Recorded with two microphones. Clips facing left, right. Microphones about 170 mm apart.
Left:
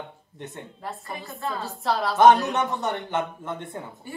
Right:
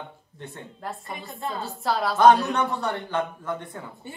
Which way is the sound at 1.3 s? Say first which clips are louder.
Left 1 dB; 20° right (ahead or behind).